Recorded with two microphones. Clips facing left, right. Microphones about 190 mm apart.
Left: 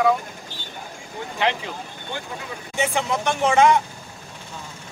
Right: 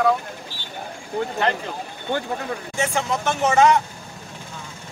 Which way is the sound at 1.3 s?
5° left (ahead or behind).